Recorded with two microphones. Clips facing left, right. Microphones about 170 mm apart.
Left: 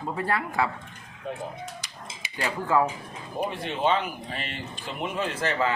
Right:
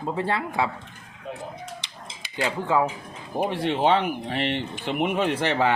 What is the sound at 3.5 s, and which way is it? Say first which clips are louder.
Speech: right 5 dB; 75° right (ahead or behind).